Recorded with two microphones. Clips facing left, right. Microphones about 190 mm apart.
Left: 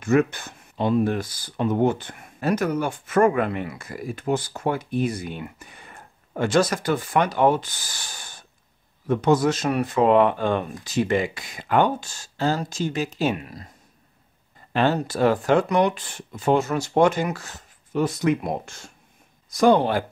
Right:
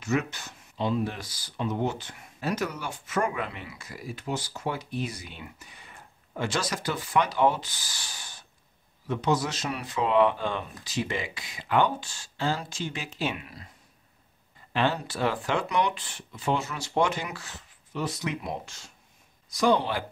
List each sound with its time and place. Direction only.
0.0 s speech: 55° left (ahead or behind)
14.7 s speech: 45° left (ahead or behind)